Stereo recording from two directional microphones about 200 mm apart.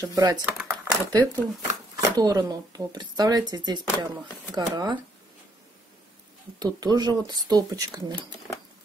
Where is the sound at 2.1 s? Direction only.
20° right (ahead or behind).